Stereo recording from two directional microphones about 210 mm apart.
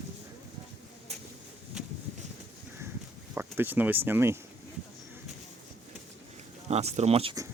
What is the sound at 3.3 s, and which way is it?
Speech, 10° right (ahead or behind).